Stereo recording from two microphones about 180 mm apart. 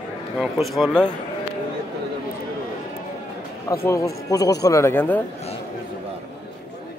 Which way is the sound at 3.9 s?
20° left (ahead or behind).